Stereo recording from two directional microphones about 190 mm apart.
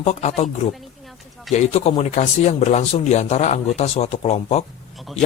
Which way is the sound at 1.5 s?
35° left (ahead or behind).